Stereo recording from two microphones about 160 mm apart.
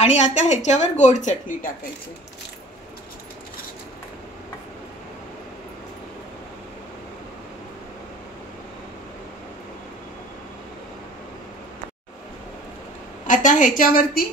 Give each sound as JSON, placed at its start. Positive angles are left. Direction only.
{"t": 0.0, "sound": "a woman's voice", "side_deg": 45}
{"t": 13.3, "sound": "a woman's voice", "side_deg": 55}